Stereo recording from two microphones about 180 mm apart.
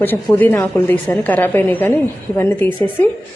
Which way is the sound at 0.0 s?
10° left (ahead or behind).